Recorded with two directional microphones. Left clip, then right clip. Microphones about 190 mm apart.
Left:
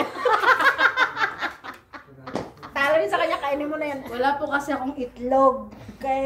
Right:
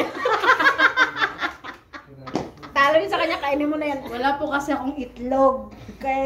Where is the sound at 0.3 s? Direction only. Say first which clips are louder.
Even; 25° left (ahead or behind).